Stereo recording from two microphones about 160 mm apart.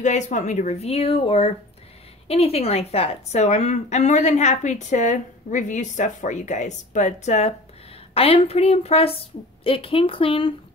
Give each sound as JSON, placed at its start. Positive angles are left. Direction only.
{"t": 0.0, "sound": "a woman's voice", "side_deg": 50}